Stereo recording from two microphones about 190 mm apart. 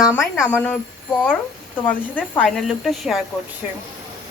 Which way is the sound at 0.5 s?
10° left (ahead or behind).